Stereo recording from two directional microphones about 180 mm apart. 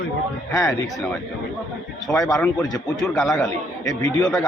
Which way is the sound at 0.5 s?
20° left (ahead or behind).